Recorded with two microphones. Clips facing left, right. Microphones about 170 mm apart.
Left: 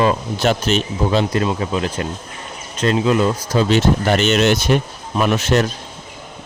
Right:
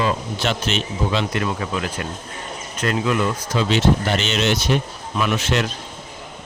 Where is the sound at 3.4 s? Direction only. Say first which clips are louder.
Even; 45° left (ahead or behind).